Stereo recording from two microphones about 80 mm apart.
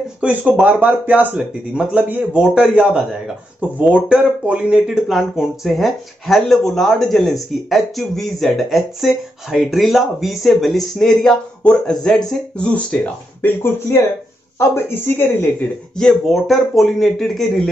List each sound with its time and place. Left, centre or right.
0.2 s speech: centre
5.0 s speech: centre
14.6 s a woman's voice: left
16.0 s speech: centre